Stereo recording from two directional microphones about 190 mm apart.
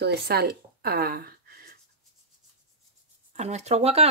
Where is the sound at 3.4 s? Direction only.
35° right (ahead or behind).